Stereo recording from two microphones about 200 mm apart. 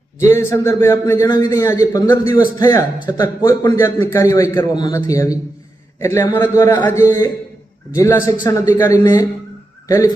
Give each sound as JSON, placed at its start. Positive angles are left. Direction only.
{"t": 0.2, "sound": "a man's voice", "side_deg": 15}